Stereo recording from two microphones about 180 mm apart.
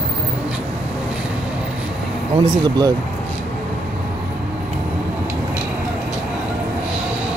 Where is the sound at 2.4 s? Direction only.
25° right (ahead or behind).